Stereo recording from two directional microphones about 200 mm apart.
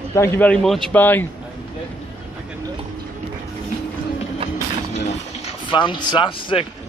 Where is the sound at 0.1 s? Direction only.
10° left (ahead or behind).